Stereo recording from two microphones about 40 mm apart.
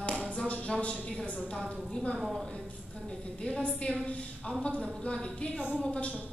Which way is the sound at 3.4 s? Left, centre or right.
Left.